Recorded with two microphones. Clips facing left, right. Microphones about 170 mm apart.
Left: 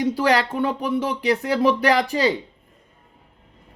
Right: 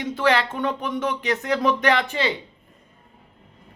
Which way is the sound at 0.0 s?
35° left (ahead or behind).